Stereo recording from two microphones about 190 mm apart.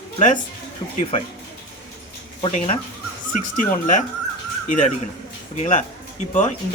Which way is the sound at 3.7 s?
45° left (ahead or behind).